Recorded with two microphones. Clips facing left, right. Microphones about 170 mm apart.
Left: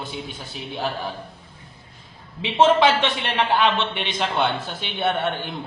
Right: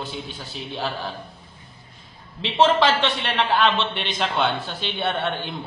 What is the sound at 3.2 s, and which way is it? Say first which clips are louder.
A man's voice: even; 15° left (ahead or behind).